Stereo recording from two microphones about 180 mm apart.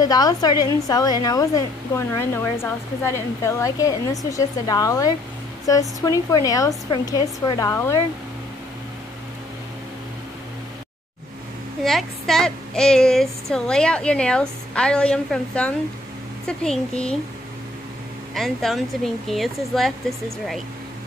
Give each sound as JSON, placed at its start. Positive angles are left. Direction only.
{"t": 0.0, "sound": "a woman's voice", "side_deg": 20}
{"t": 11.8, "sound": "speech", "side_deg": 0}
{"t": 18.3, "sound": "speech", "side_deg": 0}